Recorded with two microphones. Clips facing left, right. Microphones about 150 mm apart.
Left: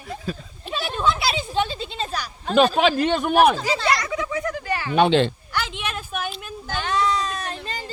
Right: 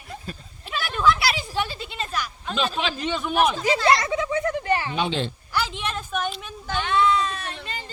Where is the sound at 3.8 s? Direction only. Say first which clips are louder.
Right 5 dB; 25° right (ahead or behind).